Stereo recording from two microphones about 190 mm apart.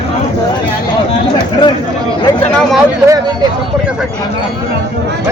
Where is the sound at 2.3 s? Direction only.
15° left (ahead or behind).